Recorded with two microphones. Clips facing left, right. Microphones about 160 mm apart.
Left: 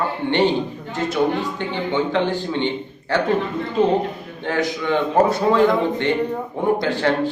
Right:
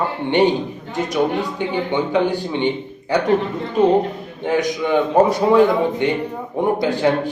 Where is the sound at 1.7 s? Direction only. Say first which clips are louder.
Right 1 dB; 15° right (ahead or behind).